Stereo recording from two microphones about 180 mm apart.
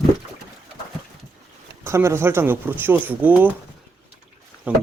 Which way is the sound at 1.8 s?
15° right (ahead or behind).